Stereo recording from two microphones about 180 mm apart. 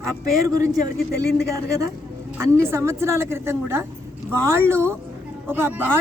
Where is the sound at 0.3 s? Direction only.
20° right (ahead or behind).